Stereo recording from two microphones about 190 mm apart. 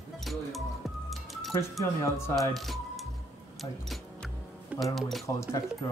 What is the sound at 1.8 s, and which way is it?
Speech, 15° left (ahead or behind).